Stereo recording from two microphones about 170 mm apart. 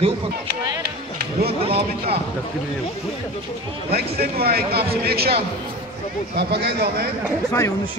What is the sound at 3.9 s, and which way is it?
A man's voice, 65° right (ahead or behind).